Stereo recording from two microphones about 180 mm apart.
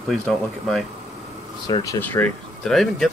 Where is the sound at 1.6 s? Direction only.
20° left (ahead or behind).